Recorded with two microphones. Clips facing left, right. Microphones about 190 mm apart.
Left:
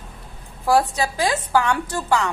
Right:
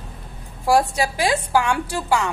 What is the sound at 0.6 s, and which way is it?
A woman's voice, 15° right (ahead or behind).